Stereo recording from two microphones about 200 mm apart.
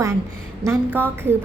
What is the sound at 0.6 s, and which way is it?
Speech, 10° right (ahead or behind).